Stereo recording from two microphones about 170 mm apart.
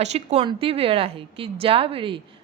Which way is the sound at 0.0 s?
40° right (ahead or behind).